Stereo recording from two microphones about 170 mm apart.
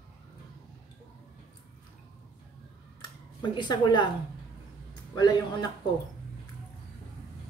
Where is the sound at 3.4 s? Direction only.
25° left (ahead or behind).